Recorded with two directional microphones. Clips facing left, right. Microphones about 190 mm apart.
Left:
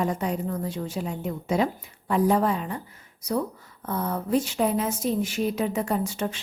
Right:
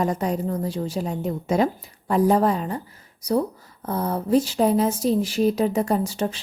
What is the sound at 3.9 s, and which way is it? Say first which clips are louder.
Speech: right 4 dB; 35° right (ahead or behind).